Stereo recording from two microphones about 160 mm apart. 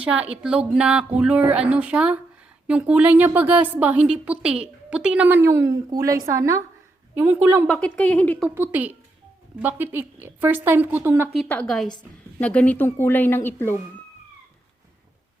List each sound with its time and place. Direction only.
0.0 s a woman's voice: 5° right (ahead or behind)
7.7 s speech: 5° left (ahead or behind)
8.5 s a woman's voice: 15° right (ahead or behind)
11.3 s a woman's voice: 5° left (ahead or behind)